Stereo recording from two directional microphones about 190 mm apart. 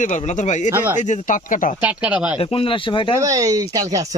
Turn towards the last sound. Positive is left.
turn(degrees=-20)  # may be behind; listen again after turning